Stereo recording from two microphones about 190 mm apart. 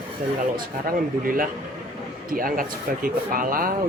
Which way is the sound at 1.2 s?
50° right (ahead or behind).